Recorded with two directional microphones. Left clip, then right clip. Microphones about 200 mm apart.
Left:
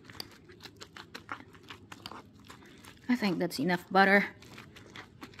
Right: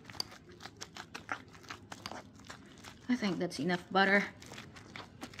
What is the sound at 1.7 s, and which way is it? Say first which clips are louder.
Biting: right 1 dB; 5° right (ahead or behind).